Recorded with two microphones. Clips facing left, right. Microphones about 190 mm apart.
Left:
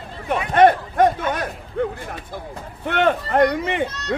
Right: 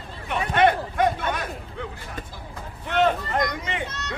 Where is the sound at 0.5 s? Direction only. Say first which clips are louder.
Left 6 dB; 45° left (ahead or behind).